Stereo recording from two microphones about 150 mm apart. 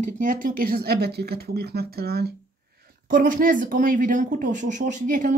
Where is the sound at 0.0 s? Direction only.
60° right (ahead or behind); by 2.2 s 90° right.